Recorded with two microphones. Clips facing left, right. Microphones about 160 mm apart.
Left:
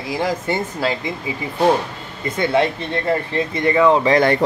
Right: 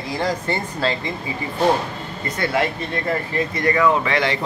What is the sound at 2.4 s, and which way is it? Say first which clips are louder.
Speech: left 4 dB; 25° left (ahead or behind).